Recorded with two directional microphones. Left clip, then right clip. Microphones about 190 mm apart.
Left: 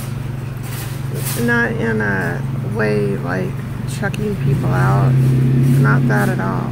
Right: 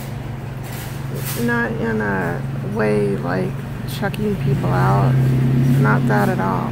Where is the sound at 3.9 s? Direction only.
10° right (ahead or behind).